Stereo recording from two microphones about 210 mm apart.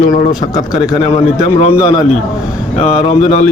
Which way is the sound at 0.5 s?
15° left (ahead or behind).